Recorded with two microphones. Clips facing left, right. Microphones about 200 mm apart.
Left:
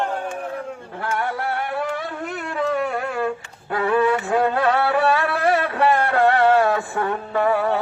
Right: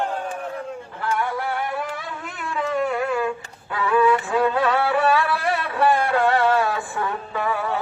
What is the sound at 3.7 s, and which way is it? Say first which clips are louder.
Music: even; 45° left (ahead or behind).